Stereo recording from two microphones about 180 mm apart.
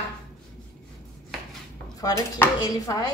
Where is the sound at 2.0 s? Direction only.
20° left (ahead or behind).